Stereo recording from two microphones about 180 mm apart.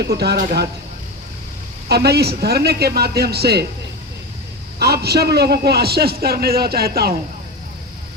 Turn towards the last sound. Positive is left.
turn(degrees=-60)  # may be behind; listen again after turning